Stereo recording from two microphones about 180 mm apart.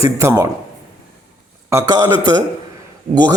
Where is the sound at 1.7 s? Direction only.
20° right (ahead or behind).